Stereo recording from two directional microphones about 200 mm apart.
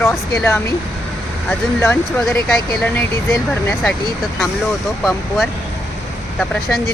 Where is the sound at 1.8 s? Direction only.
10° left (ahead or behind).